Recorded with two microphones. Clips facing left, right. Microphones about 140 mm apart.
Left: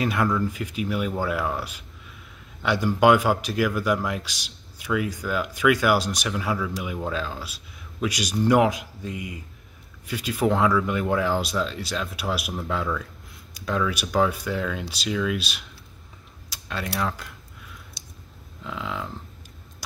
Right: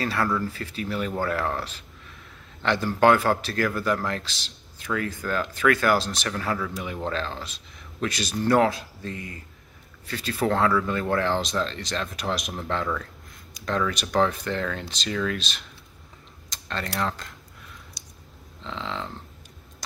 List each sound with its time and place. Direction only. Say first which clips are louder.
0.0 s speech: left 2 dB; 15° left (ahead or behind)
18.0 s a sound: left 1 dB; 25° left (ahead or behind)
18.6 s cattle: left 1 dB; 5° left (ahead or behind)